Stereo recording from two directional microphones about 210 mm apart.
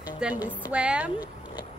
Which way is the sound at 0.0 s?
10° right (ahead or behind).